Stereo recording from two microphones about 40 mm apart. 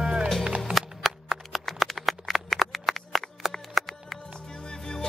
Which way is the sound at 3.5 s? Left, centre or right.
Centre.